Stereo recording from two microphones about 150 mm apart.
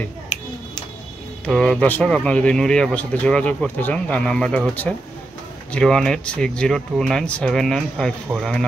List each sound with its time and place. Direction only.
1.4 s speech: 5° left (ahead or behind)